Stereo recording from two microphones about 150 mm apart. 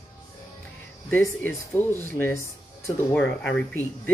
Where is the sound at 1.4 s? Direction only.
15° left (ahead or behind).